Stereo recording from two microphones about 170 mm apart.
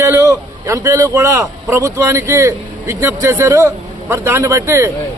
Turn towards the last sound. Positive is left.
turn(degrees=-15)  # may be behind; listen again after turning